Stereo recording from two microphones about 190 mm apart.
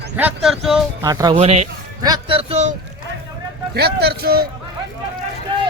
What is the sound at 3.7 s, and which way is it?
Speech, 60° right (ahead or behind).